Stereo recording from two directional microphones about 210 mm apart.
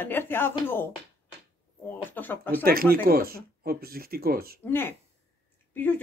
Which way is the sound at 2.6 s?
45° right (ahead or behind).